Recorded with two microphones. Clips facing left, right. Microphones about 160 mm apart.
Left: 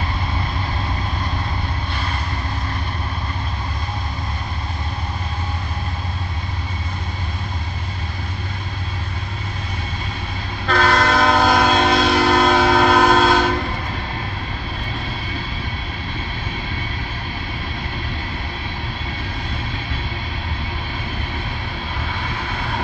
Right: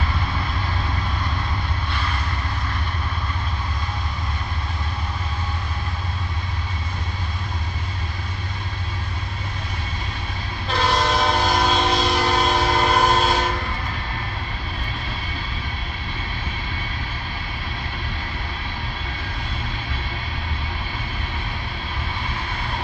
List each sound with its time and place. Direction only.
10.7 s train: 55° left (ahead or behind); by 13.4 s 75° left (ahead or behind)